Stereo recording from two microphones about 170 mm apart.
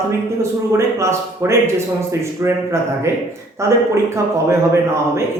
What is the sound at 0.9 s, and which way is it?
Speech, 15° right (ahead or behind).